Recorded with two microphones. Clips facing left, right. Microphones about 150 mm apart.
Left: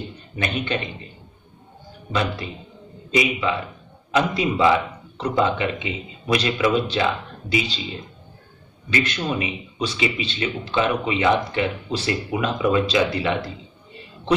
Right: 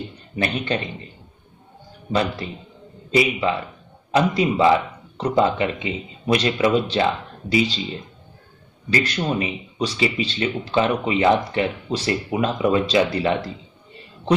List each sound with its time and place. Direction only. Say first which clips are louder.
0.4 s speech: right 2 dB; 35° right (ahead or behind)
2.1 s speech: right 2 dB; 35° right (ahead or behind)
8.9 s speech: right 2 dB; 35° right (ahead or behind)